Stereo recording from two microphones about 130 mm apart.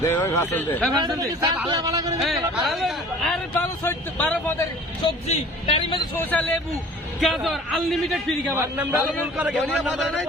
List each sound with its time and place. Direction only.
0.0 s a man's voice: 20° left (ahead or behind)
1.2 s a man's voice: 35° right (ahead or behind)
2.2 s a man's voice: centre (ahead or behind)
3.5 s speech: 15° left (ahead or behind)
5.0 s a man's voice: 55° left (ahead or behind)
6.1 s speech: 10° left (ahead or behind)
7.2 s a man's voice: centre (ahead or behind)
8.5 s a man's voice: 20° right (ahead or behind)
9.7 s a man's voice: centre (ahead or behind)